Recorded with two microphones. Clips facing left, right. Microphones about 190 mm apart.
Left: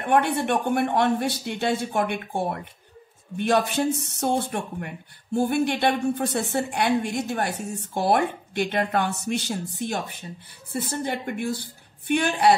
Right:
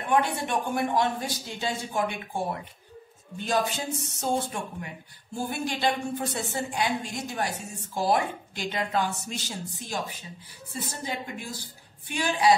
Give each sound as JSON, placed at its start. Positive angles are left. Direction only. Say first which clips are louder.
{"t": 0.0, "sound": "speech", "louder": "left 4 dB", "side_deg": 60}